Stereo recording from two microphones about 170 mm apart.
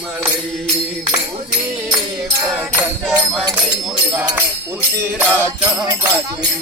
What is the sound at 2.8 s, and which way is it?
Music, 5° right (ahead or behind).